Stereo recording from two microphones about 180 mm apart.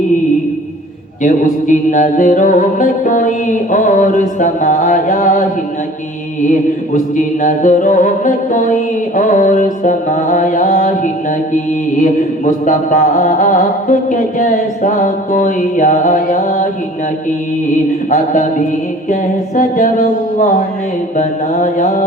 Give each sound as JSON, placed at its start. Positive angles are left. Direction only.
{"t": 1.2, "sound": "mantra", "side_deg": 45}
{"t": 7.4, "sound": "mantra", "side_deg": 45}
{"t": 19.5, "sound": "mantra", "side_deg": 45}